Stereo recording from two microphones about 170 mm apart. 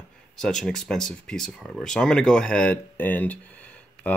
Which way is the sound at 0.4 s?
5° left (ahead or behind).